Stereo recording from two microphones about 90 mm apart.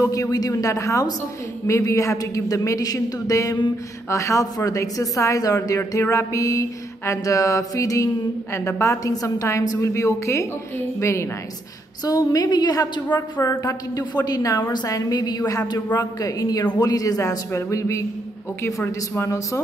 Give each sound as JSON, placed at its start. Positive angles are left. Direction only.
{"t": 0.0, "sound": "music", "side_deg": 40}
{"t": 12.0, "sound": "a woman's voice", "side_deg": 45}
{"t": 17.5, "sound": "music", "side_deg": 35}